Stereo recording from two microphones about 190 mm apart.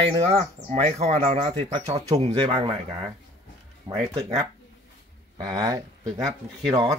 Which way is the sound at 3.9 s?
15° right (ahead or behind).